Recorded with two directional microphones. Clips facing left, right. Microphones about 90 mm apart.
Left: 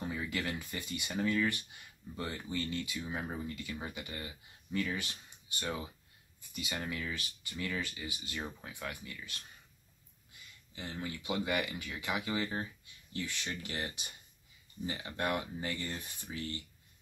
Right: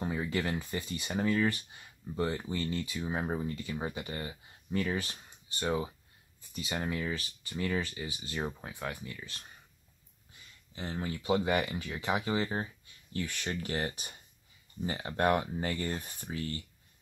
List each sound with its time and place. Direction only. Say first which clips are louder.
0.0 s speech: right 4 dB; 30° right (ahead or behind)
10.7 s speech: right 4 dB; 35° right (ahead or behind)
13.1 s speech: right 4 dB; 50° right (ahead or behind)